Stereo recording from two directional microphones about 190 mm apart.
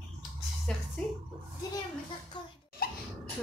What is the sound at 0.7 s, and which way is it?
Speech, 5° left (ahead or behind).